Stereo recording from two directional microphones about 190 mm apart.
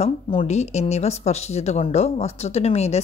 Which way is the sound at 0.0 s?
30° left (ahead or behind).